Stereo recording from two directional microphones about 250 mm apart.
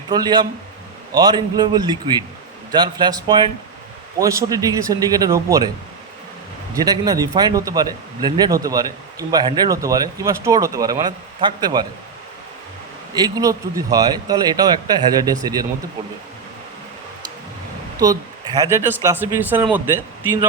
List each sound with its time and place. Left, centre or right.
0.1 s a man's voice: centre
6.7 s a man's voice: centre
13.1 s a man's voice: centre
17.9 s a man's voice: centre